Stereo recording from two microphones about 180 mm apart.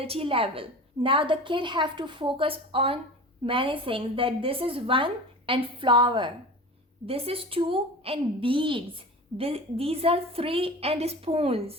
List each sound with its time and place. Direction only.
0.0 s a woman's voice: 30° right (ahead or behind)